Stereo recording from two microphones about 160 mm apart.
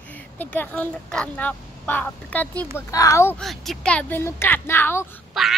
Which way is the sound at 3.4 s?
Centre (ahead or behind).